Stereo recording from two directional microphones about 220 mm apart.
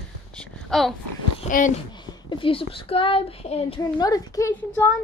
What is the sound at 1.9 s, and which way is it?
A child's voice, 20° left (ahead or behind).